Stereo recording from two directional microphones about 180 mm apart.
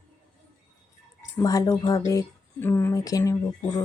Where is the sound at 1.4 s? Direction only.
20° left (ahead or behind).